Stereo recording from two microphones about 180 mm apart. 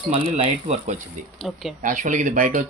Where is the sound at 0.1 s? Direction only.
40° right (ahead or behind).